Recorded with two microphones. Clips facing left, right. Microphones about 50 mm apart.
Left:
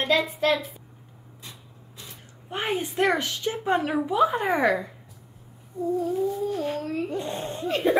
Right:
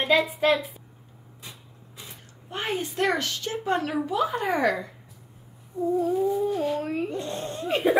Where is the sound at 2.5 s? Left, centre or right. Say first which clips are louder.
Left 2 dB; centre.